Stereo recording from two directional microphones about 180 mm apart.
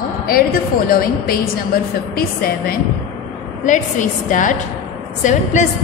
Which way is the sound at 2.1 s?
55° left (ahead or behind).